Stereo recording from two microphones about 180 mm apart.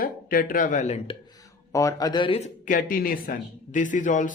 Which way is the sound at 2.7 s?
50° left (ahead or behind).